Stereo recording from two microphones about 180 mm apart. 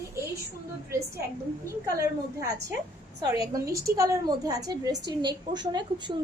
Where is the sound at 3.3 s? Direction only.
20° right (ahead or behind).